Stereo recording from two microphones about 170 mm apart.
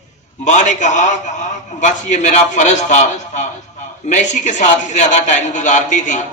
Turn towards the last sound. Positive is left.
turn(degrees=45)  # may be behind; listen again after turning